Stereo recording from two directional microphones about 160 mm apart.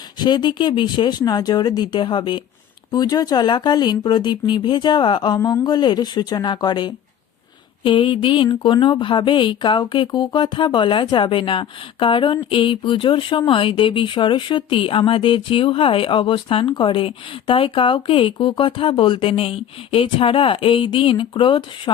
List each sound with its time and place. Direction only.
0.2 s speech: 30° left (ahead or behind)